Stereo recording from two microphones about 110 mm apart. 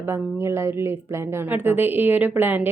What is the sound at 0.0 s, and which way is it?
A woman's voice, 25° right (ahead or behind).